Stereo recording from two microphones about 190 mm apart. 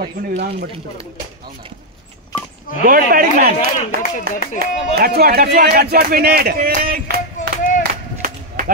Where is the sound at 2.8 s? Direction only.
50° right (ahead or behind).